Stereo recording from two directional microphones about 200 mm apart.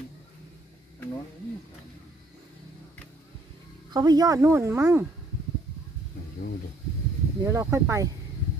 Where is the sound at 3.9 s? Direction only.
20° right (ahead or behind).